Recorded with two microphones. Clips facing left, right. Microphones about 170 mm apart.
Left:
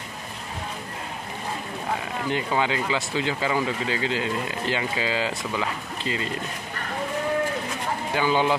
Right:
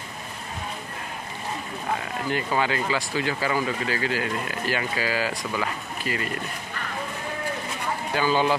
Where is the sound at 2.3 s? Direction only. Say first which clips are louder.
Even; 20° left (ahead or behind).